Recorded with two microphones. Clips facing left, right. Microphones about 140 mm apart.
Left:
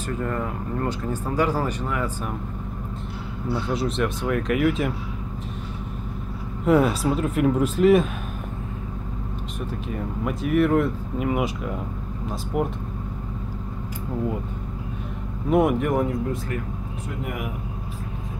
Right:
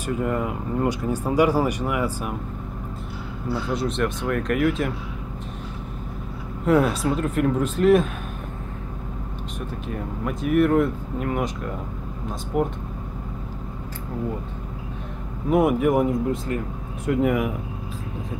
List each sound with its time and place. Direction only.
0.0 s speech: 15° right (ahead or behind)
3.4 s speech: 5° right (ahead or behind)
6.6 s speech: centre (ahead or behind)
9.8 s speech: centre (ahead or behind)
15.5 s speech: 5° right (ahead or behind)
17.1 s speech: 90° right